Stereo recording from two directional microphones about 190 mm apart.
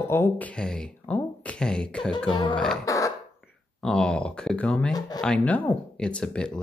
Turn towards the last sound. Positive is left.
turn(degrees=5)  # may be behind; listen again after turning